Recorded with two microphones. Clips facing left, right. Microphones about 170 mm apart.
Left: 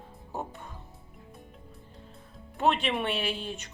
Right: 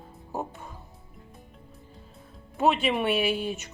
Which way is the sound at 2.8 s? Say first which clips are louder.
Right 5 dB; 10° right (ahead or behind).